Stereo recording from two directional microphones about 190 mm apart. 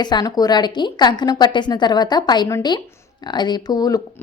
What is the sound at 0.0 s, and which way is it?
A woman's voice, 20° left (ahead or behind).